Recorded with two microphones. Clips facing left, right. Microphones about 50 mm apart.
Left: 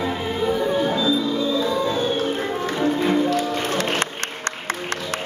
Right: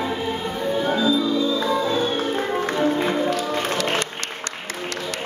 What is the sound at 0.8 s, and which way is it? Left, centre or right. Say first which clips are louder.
Music: even; right.